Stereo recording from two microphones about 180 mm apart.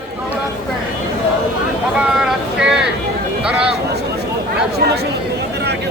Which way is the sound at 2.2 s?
5° right (ahead or behind).